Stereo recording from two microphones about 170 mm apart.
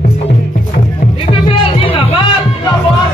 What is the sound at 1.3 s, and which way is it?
Music, 30° left (ahead or behind).